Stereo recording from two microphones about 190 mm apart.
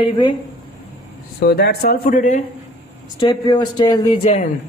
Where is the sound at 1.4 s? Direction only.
55° left (ahead or behind).